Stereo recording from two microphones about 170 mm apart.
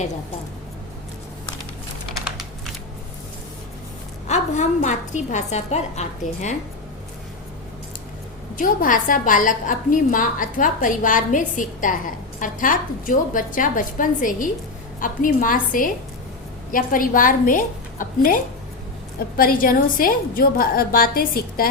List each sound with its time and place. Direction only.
4.3 s a woman's voice: 45° left (ahead or behind)
8.5 s a woman's voice: 50° left (ahead or behind)
19.4 s a woman's voice: 55° left (ahead or behind)